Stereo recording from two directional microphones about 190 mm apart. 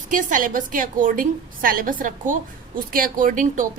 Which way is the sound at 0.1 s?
45° right (ahead or behind).